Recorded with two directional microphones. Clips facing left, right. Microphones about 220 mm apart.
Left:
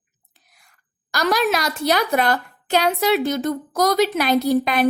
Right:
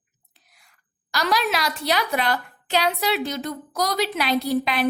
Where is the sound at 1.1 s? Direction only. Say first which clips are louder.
Left 4 dB; 45° left (ahead or behind).